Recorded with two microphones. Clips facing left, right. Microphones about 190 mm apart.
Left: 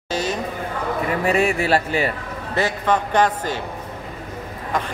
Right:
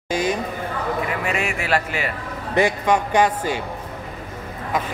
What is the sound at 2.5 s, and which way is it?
A man's voice, 15° right (ahead or behind).